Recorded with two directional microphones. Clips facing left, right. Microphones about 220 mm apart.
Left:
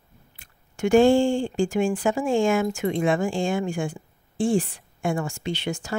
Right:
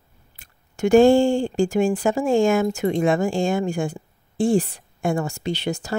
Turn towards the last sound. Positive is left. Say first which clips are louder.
# right 3 dB
turn(degrees=-40)  # may be behind; listen again after turning